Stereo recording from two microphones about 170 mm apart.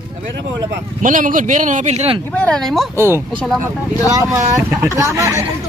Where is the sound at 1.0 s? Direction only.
50° right (ahead or behind).